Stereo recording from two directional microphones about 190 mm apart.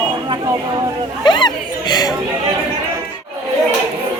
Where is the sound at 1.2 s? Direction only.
25° left (ahead or behind).